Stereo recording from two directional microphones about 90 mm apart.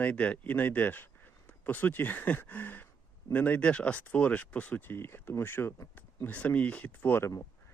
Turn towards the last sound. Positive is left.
turn(degrees=20)  # may be behind; listen again after turning